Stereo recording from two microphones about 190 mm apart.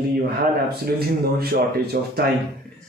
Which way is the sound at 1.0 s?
55° right (ahead or behind).